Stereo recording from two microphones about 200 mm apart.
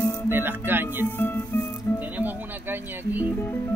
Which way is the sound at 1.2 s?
10° left (ahead or behind).